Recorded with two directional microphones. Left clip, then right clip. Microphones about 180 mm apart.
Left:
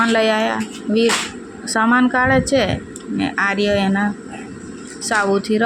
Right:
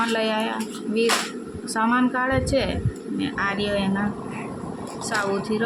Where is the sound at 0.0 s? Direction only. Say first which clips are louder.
Left 7 dB; 30° left (ahead or behind).